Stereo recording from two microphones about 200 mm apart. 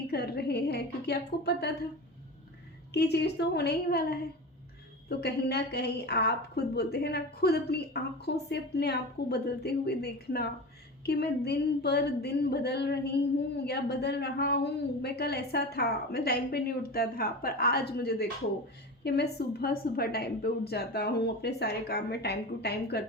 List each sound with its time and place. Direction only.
0.1 s a woman's voice: 55° left (ahead or behind)
2.9 s a woman's voice: 55° left (ahead or behind)